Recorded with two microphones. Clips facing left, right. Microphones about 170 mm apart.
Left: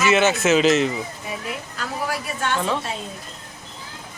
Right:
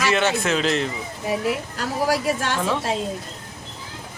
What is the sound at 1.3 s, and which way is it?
Speech, 75° right (ahead or behind).